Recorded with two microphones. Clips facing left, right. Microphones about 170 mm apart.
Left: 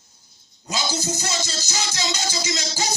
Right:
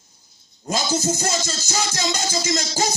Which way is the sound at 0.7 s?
45° right (ahead or behind).